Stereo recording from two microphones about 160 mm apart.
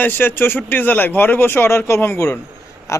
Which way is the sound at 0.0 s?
10° left (ahead or behind).